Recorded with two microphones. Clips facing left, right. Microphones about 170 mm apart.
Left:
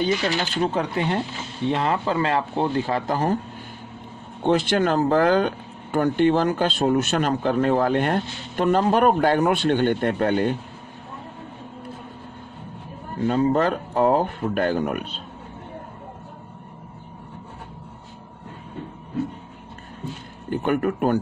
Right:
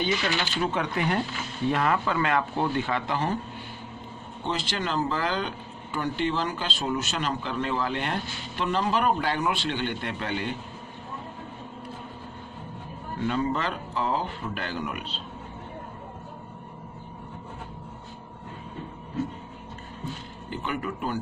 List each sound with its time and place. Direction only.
0.0 s speech: 35° left (ahead or behind)
4.4 s speech: 55° left (ahead or behind)
13.2 s speech: 40° left (ahead or behind)
20.4 s speech: 55° left (ahead or behind)